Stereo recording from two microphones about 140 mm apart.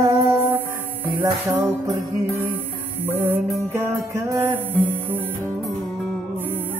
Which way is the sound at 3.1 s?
20° right (ahead or behind).